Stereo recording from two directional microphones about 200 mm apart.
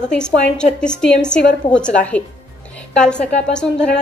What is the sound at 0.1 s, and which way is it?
A woman's voice, 5° left (ahead or behind).